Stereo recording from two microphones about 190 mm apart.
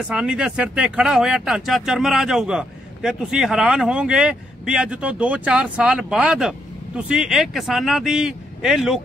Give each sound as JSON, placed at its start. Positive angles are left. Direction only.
{"t": 0.1, "sound": "speech", "side_deg": -5}